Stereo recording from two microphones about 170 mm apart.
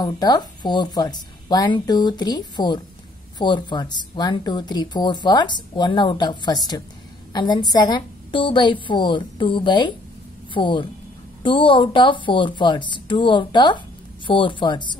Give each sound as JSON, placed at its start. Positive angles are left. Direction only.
{"t": 0.0, "sound": "a woman's voice", "side_deg": 25}